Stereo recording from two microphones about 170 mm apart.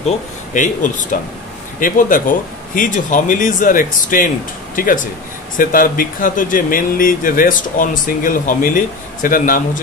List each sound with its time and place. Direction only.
0.6 s speech: 50° left (ahead or behind)